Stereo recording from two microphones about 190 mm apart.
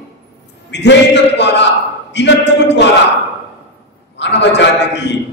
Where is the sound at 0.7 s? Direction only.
65° left (ahead or behind).